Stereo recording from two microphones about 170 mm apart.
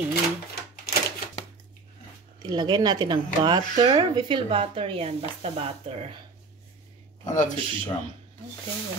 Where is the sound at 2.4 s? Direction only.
25° right (ahead or behind).